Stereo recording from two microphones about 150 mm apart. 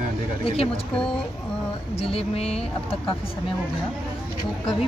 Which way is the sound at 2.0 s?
40° left (ahead or behind).